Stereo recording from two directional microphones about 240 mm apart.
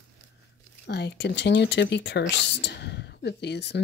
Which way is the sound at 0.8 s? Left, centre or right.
Left.